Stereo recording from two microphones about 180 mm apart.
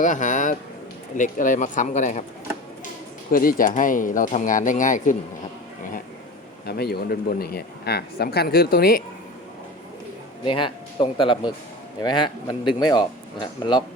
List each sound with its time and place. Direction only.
0.0 s speech: 45° left (ahead or behind)
3.3 s speech: 50° left (ahead or behind)
6.7 s speech: 60° left (ahead or behind)
10.4 s speech: 30° left (ahead or behind)